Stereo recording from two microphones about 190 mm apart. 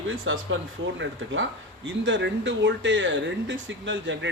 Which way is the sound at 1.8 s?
75° right (ahead or behind).